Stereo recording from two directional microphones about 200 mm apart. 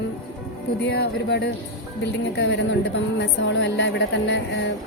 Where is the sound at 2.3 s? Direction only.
60° left (ahead or behind).